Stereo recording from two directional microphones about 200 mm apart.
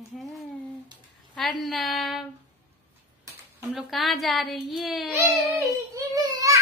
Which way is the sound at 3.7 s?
Centre (ahead or behind).